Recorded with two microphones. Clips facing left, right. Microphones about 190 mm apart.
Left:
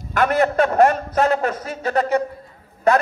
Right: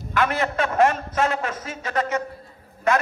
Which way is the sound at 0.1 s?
45° left (ahead or behind).